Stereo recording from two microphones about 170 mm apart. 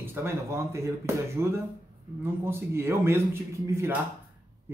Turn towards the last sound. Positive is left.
turn(degrees=-15)  # may be behind; listen again after turning